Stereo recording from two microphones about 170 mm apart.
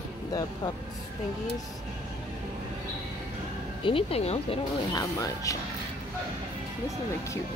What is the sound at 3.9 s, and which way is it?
Speech, 35° left (ahead or behind).